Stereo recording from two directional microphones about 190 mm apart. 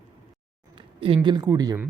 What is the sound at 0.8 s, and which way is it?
Speech, 30° right (ahead or behind).